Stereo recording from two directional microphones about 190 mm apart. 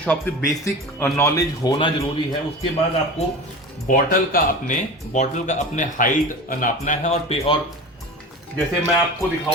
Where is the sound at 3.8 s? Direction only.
45° left (ahead or behind).